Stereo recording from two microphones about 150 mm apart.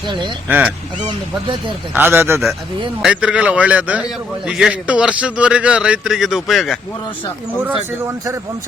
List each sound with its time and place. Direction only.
0.4 s a man's voice: 10° right (ahead or behind)
1.0 s speech: 30° right (ahead or behind)
2.0 s a man's voice: 15° right (ahead or behind)